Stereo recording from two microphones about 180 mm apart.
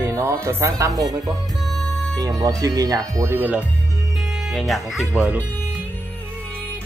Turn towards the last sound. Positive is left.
turn(degrees=-5)  # may be behind; listen again after turning